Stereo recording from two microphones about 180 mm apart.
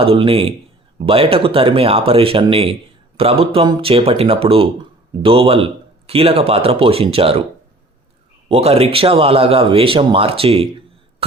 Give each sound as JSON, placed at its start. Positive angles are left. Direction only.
{"t": 0.0, "sound": "speech", "side_deg": -30}
{"t": 8.4, "sound": "speech", "side_deg": -35}
{"t": 11.2, "sound": "cough", "side_deg": -30}